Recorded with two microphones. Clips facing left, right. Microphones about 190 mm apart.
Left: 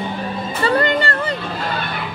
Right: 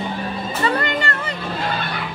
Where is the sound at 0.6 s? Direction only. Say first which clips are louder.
Left 5 dB; 35° left (ahead or behind).